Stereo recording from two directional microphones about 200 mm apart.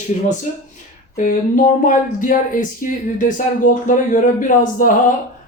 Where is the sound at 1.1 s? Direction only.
40° left (ahead or behind).